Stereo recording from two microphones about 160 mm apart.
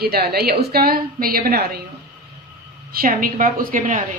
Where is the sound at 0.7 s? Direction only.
70° right (ahead or behind).